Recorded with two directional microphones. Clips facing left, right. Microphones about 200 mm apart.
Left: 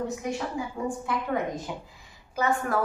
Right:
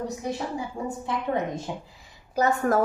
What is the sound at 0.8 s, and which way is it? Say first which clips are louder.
Speech: right 1 dB; 25° right (ahead or behind).